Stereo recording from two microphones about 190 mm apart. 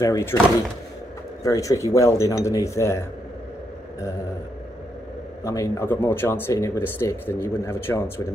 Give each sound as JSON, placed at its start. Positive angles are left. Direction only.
{"t": 0.0, "sound": "speech", "side_deg": 15}
{"t": 1.4, "sound": "speech", "side_deg": 15}
{"t": 5.4, "sound": "speech", "side_deg": 15}